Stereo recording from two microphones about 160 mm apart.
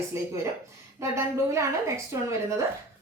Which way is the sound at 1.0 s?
15° right (ahead or behind).